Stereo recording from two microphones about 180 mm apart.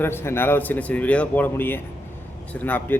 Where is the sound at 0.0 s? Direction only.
15° left (ahead or behind).